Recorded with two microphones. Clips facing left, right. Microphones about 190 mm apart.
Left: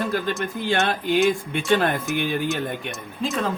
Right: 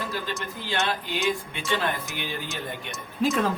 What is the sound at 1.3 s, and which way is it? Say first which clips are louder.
Speech: left 7 dB; 50° left (ahead or behind).